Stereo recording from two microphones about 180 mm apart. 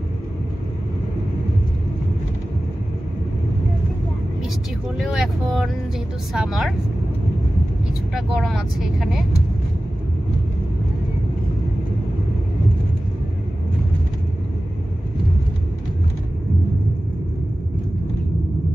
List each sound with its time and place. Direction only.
4.9 s vehicle: centre (ahead or behind)
6.3 s speech: 5° right (ahead or behind)
8.1 s speech: centre (ahead or behind)